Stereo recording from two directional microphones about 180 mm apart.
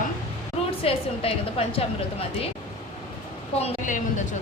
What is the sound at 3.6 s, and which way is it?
Speech, 40° left (ahead or behind).